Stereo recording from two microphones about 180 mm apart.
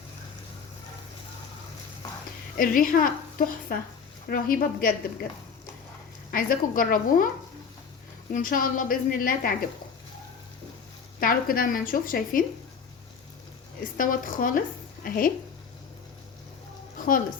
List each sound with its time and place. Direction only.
2.6 s a woman's voice: 50° left (ahead or behind)
6.3 s a woman's voice: 50° left (ahead or behind)
8.3 s a woman's voice: 50° left (ahead or behind)
11.2 s a woman's voice: 55° left (ahead or behind)
13.9 s a woman's voice: 50° left (ahead or behind)
17.0 s music: 50° left (ahead or behind)